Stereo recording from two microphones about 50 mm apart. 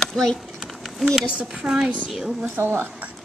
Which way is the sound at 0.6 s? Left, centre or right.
Centre.